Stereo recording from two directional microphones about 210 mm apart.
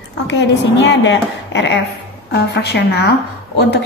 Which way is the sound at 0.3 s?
55° left (ahead or behind).